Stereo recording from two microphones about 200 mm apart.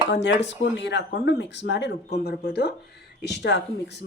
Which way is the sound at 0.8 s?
60° left (ahead or behind).